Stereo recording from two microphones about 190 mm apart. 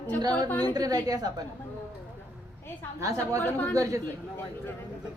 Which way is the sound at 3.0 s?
15° right (ahead or behind).